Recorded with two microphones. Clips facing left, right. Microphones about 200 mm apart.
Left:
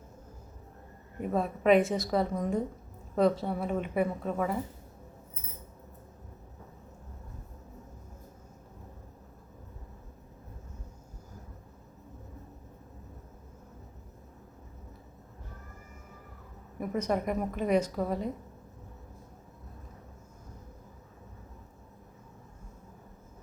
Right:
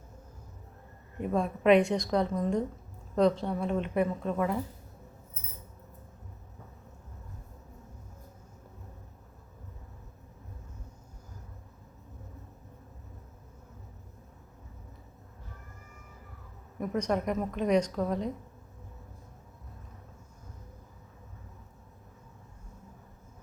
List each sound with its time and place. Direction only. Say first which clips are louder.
1.2 s a woman's voice: right 1 dB; 5° left (ahead or behind)
16.8 s a woman's voice: even; 5° left (ahead or behind)